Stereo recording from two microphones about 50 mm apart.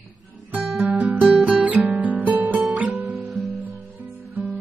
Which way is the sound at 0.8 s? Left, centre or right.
Right.